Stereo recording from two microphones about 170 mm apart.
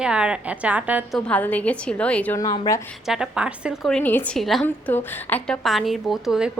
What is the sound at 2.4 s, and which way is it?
Speech, 20° left (ahead or behind).